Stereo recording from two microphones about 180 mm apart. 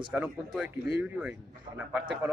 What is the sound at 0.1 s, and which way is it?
Speech, 5° right (ahead or behind).